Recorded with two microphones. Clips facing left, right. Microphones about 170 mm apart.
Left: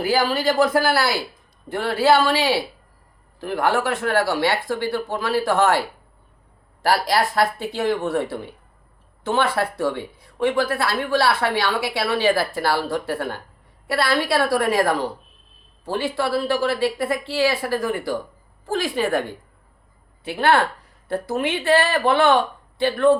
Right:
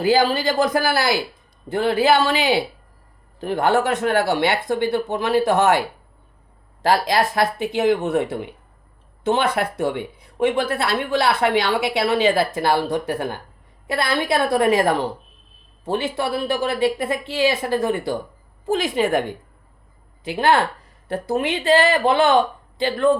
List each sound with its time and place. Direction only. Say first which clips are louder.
0.0 s speech: right 2 dB; 20° right (ahead or behind)
6.8 s speech: right 1 dB; 20° right (ahead or behind)